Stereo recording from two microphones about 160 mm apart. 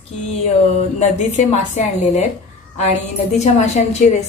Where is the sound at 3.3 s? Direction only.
45° left (ahead or behind).